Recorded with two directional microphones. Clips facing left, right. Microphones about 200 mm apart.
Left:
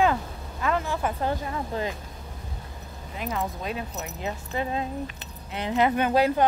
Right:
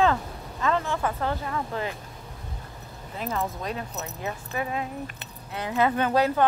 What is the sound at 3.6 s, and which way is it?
A woman's voice, 20° left (ahead or behind).